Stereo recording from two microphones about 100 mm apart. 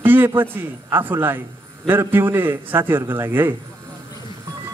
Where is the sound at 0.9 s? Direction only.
20° right (ahead or behind).